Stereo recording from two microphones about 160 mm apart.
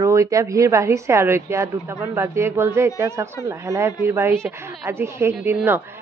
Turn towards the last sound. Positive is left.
turn(degrees=-15)  # may be behind; listen again after turning